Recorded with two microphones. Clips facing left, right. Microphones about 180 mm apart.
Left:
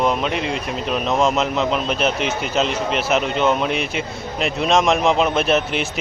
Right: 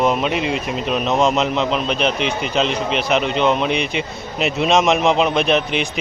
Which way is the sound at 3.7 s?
45° left (ahead or behind).